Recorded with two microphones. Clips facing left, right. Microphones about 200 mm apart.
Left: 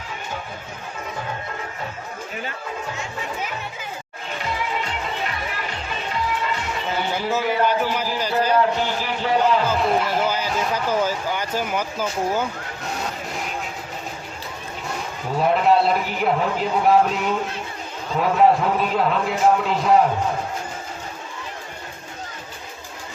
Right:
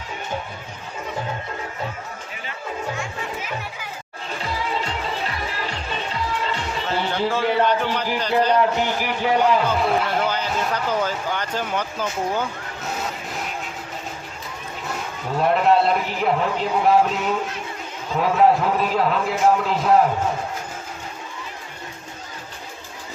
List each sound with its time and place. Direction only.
4.8 s music: 30° right (ahead or behind)
7.3 s speech: 5° left (ahead or behind)
8.7 s a man's voice: 15° right (ahead or behind)
9.4 s speech: centre (ahead or behind)
15.4 s speech: centre (ahead or behind)